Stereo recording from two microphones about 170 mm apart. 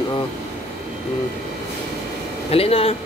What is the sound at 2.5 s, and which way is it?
Speech, 35° left (ahead or behind).